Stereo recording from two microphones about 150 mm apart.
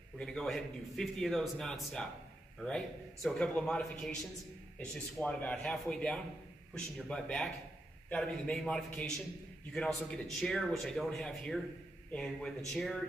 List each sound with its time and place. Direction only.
0.2 s a man's voice: 5° left (ahead or behind)